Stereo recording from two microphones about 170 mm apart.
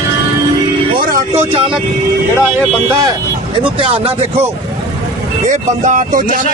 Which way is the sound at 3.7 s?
30° right (ahead or behind).